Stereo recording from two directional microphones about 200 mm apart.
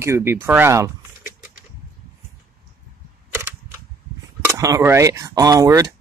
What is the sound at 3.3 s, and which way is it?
Camera, 15° right (ahead or behind).